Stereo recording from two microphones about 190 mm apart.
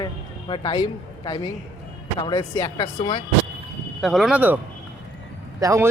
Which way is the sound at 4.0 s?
Centre (ahead or behind).